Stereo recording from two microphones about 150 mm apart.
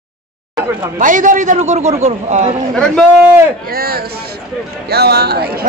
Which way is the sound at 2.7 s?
5° left (ahead or behind).